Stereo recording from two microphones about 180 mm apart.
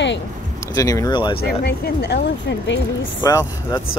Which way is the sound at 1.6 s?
65° left (ahead or behind).